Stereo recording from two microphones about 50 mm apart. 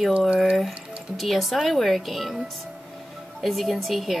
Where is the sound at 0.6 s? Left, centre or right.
Centre.